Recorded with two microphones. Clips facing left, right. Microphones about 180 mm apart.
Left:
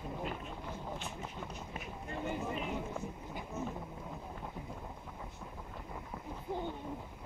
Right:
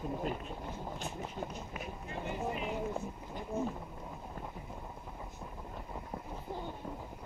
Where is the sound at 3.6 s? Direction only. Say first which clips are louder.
Right 5 dB; 35° right (ahead or behind).